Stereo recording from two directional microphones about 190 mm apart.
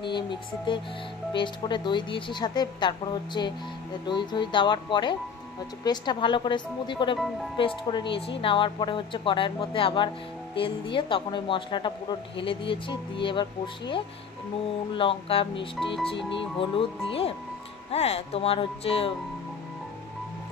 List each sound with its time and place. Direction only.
0.0 s speech: 25° left (ahead or behind)